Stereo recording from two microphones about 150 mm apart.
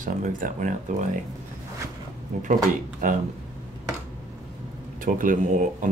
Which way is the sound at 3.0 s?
65° right (ahead or behind).